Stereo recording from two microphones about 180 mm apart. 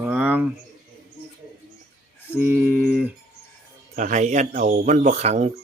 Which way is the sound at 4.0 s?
45° right (ahead or behind).